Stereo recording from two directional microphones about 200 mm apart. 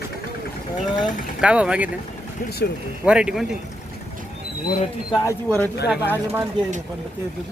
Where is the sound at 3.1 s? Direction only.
5° right (ahead or behind).